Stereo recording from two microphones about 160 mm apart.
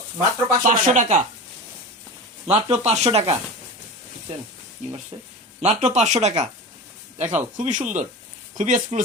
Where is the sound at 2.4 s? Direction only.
40° right (ahead or behind).